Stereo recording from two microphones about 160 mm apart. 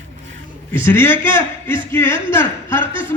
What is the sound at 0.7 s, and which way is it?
Speech, 15° left (ahead or behind).